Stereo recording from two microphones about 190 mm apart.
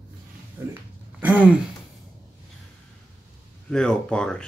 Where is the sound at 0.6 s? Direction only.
10° right (ahead or behind).